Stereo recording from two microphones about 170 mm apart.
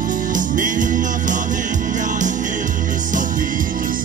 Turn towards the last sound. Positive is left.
turn(degrees=-50)  # may be behind; listen again after turning